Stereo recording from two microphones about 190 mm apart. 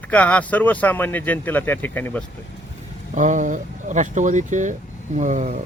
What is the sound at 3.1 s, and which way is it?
Speech, 40° right (ahead or behind).